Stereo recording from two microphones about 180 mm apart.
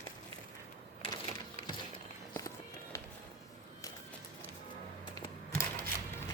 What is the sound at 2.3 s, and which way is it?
Run, 15° left (ahead or behind).